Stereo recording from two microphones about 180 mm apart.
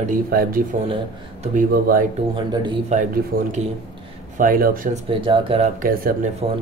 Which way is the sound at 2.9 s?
40° right (ahead or behind).